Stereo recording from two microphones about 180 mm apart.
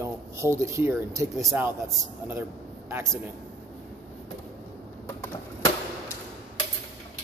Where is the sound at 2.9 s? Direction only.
15° right (ahead or behind).